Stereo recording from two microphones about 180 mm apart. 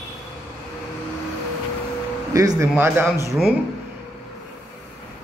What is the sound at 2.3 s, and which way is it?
A man's voice, 20° right (ahead or behind).